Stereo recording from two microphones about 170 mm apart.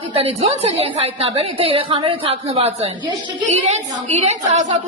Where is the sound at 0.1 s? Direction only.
35° right (ahead or behind).